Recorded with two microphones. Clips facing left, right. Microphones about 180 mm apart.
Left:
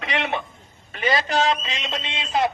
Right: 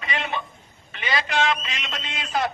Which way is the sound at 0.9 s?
40° left (ahead or behind).